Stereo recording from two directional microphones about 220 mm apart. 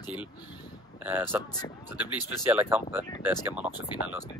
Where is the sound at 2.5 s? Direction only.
10° right (ahead or behind).